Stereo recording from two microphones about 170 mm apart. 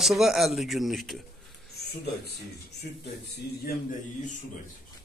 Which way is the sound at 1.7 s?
70° left (ahead or behind).